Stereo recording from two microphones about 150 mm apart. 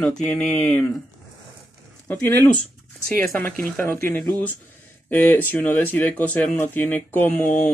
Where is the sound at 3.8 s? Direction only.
15° left (ahead or behind).